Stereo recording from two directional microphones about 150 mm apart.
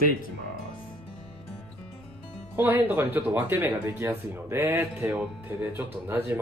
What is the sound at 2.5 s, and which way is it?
Speech, 15° right (ahead or behind).